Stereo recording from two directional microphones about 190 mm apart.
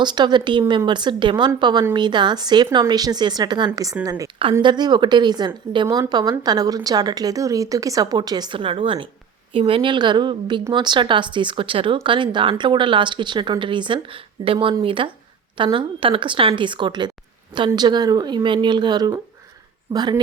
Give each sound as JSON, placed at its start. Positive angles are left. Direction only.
{"t": 0.0, "sound": "a woman's voice", "side_deg": -25}